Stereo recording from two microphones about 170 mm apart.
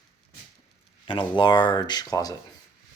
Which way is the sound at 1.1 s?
30° left (ahead or behind).